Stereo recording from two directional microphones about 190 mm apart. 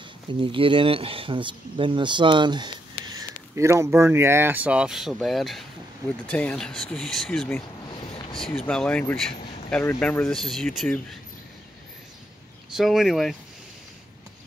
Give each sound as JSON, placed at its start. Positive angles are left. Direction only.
{"t": 0.3, "sound": "speech", "side_deg": -25}
{"t": 12.7, "sound": "speech", "side_deg": 0}